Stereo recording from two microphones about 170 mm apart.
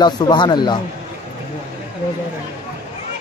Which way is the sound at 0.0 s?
25° left (ahead or behind).